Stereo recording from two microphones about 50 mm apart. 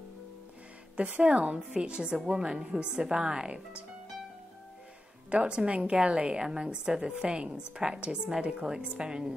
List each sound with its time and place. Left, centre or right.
0.9 s a woman's voice: right
5.3 s a woman's voice: right